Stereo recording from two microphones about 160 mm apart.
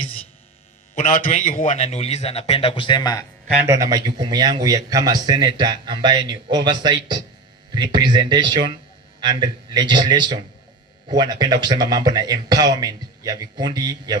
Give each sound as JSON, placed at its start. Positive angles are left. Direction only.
{"t": 0.9, "sound": "a man's voice", "side_deg": 50}
{"t": 3.6, "sound": "speech", "side_deg": -20}